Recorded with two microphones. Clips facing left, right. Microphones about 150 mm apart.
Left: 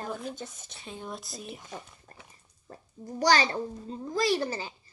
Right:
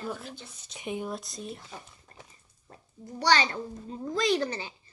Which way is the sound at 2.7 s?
40° left (ahead or behind).